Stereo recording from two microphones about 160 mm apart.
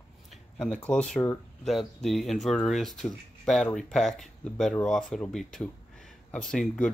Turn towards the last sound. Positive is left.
turn(degrees=5)  # may be behind; listen again after turning